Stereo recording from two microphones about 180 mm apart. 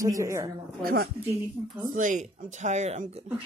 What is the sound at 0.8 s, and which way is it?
A woman's voice, 55° right (ahead or behind).